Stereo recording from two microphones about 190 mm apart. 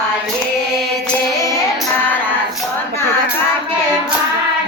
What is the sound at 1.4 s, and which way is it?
Child singing, 15° left (ahead or behind).